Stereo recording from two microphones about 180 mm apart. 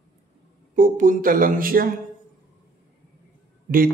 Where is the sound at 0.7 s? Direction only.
50° right (ahead or behind).